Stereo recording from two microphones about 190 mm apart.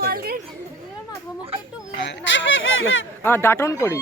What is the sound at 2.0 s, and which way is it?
A man's voice, 75° left (ahead or behind).